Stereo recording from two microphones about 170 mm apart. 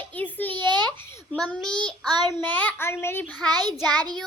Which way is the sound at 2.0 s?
25° right (ahead or behind).